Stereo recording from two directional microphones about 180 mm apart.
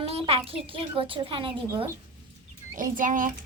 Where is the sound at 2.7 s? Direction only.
50° right (ahead or behind).